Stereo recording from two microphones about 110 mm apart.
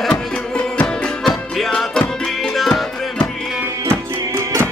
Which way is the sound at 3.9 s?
25° right (ahead or behind).